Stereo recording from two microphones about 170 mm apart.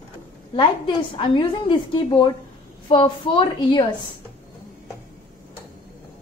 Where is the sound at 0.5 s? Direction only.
30° left (ahead or behind).